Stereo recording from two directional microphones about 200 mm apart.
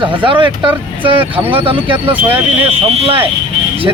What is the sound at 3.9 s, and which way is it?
Speech, 20° right (ahead or behind).